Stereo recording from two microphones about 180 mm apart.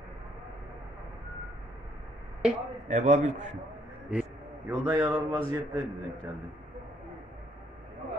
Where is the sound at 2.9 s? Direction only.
40° right (ahead or behind).